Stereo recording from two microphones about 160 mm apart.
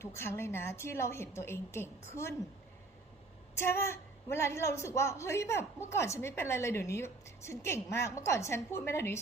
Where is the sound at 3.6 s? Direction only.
15° left (ahead or behind).